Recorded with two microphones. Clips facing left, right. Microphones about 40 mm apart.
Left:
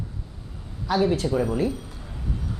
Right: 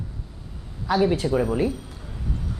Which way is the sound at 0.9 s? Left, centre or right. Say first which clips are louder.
Right 1 dB; centre.